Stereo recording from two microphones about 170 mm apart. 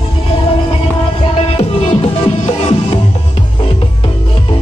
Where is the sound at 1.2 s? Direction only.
35° left (ahead or behind).